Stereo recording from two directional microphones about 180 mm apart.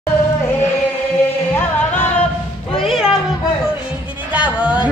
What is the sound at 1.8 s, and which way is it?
Music, 10° left (ahead or behind).